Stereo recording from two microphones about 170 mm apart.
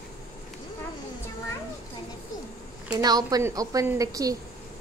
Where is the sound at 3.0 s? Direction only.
20° right (ahead or behind).